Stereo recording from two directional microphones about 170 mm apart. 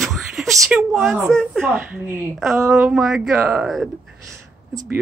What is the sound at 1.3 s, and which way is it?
Speech, centre (ahead or behind).